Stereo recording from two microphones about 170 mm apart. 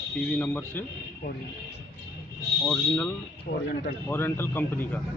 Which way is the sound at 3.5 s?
65° left (ahead or behind).